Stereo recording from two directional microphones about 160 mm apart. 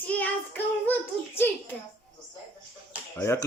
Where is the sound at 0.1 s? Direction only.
10° left (ahead or behind).